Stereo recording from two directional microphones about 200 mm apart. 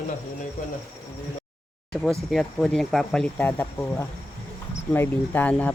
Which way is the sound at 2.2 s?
Centre (ahead or behind).